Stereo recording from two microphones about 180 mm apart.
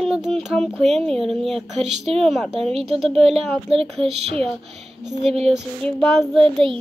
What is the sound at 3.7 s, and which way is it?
Speech, 30° right (ahead or behind).